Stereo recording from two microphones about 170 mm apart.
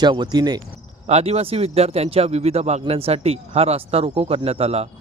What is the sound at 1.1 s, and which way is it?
Speech, 40° right (ahead or behind).